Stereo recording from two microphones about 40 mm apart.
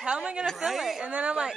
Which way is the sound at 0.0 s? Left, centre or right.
Right.